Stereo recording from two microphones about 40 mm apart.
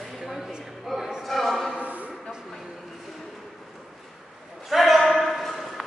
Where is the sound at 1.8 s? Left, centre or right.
Right.